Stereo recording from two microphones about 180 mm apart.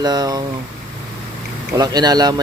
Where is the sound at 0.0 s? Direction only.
20° right (ahead or behind).